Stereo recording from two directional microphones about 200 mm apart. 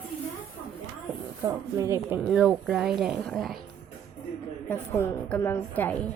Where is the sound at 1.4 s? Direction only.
15° right (ahead or behind); by 3.5 s centre (ahead or behind).